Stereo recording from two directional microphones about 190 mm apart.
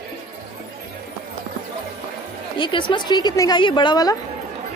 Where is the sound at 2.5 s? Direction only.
25° left (ahead or behind).